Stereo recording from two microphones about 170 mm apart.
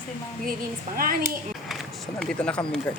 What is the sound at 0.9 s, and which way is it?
Speech, 55° right (ahead or behind).